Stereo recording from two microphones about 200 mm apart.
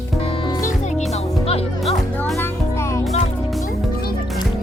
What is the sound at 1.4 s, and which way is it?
Music, 30° left (ahead or behind).